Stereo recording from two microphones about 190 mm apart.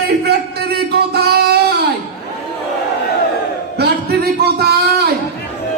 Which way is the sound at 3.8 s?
55° right (ahead or behind).